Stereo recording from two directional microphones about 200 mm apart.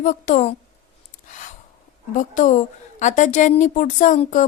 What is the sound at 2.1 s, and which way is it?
A woman's voice, 40° left (ahead or behind).